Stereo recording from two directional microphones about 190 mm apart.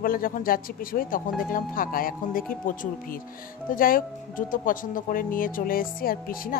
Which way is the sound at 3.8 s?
50° left (ahead or behind).